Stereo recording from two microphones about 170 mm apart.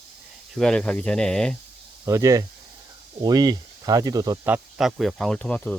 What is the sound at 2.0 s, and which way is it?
Speech, 20° right (ahead or behind).